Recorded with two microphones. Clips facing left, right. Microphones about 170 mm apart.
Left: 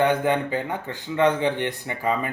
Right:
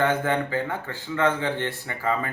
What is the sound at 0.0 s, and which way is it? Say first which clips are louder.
Speech: left 2 dB; 15° left (ahead or behind).